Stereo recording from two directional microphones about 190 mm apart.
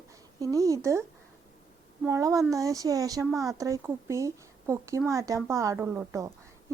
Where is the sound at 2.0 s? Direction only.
15° right (ahead or behind).